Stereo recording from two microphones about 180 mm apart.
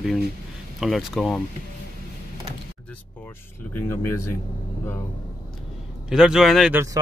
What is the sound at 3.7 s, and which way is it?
Speech, 10° left (ahead or behind).